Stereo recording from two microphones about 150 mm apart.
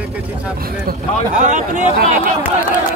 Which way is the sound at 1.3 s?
55° right (ahead or behind).